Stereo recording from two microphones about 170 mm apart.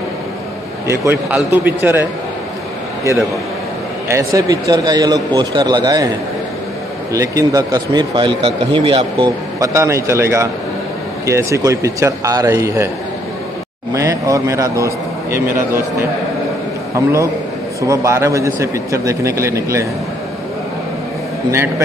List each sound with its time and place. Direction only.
0.8 s a man's voice: 15° right (ahead or behind)
4.1 s speech: 20° right (ahead or behind)
7.1 s a man's voice: 20° right (ahead or behind)
13.9 s a man's voice: 20° right (ahead or behind)
16.9 s a man's voice: 20° right (ahead or behind)
21.5 s a man's voice: 15° right (ahead or behind)